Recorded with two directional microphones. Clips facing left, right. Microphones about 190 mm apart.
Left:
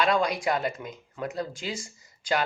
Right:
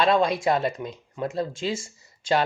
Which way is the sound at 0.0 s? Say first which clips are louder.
Right 4 dB; 25° right (ahead or behind).